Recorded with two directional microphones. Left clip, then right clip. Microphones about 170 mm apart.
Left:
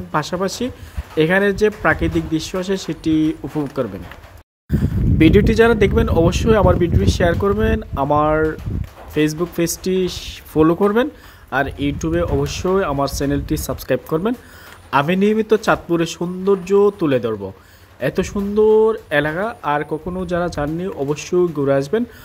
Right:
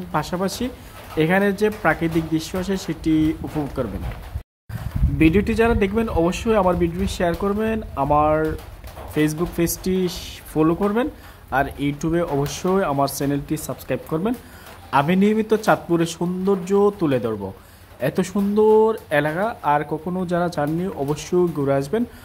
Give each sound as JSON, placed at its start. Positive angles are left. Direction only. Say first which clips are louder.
{"t": 0.1, "sound": "speech", "louder": "left 3 dB", "side_deg": 15}
{"t": 5.2, "sound": "speech", "louder": "left 5 dB", "side_deg": 20}
{"t": 10.5, "sound": "speech", "louder": "left 5 dB", "side_deg": 25}
{"t": 11.5, "sound": "speech", "louder": "left 2 dB", "side_deg": 10}